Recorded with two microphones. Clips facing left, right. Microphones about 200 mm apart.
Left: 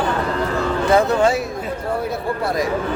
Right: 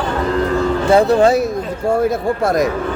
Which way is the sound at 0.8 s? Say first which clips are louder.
Right 4 dB; 35° right (ahead or behind).